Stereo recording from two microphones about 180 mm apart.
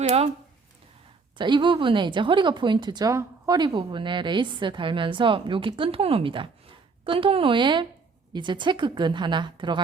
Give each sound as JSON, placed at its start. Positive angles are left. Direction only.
{"t": 1.4, "sound": "a woman's voice", "side_deg": -25}